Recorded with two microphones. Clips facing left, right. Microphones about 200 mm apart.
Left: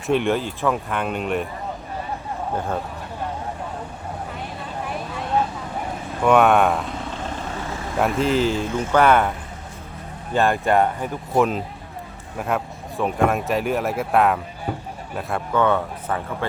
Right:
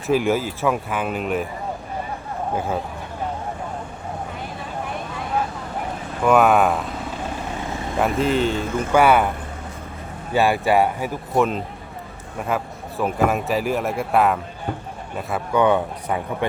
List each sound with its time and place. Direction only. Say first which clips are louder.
0.1 s speech: right 1 dB; 5° right (ahead or behind)
2.6 s speech: right 2 dB; 5° right (ahead or behind)
6.2 s speech: even; centre (ahead or behind)
10.3 s speech: right 1 dB; 5° right (ahead or behind)
15.5 s speech: right 2 dB; 15° right (ahead or behind)